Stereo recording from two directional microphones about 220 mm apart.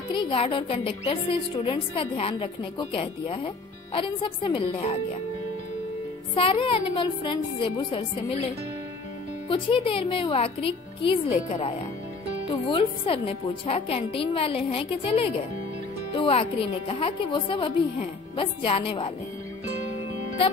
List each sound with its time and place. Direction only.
0.1 s a woman's voice: 25° left (ahead or behind)
6.3 s a woman's voice: 25° left (ahead or behind)
9.5 s a woman's voice: 25° left (ahead or behind)